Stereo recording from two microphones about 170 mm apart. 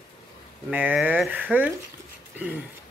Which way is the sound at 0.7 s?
10° right (ahead or behind).